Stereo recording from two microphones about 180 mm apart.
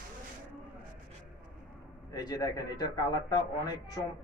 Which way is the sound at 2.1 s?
20° left (ahead or behind).